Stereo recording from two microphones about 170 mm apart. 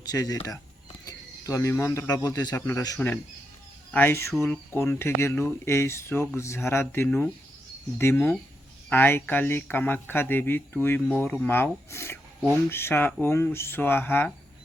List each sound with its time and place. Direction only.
0.1 s speech: 20° left (ahead or behind)